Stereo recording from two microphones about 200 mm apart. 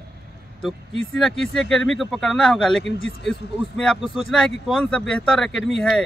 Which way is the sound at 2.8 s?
65° left (ahead or behind).